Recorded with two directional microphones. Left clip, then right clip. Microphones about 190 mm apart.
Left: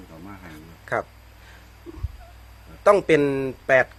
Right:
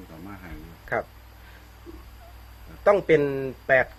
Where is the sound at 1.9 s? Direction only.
40° left (ahead or behind).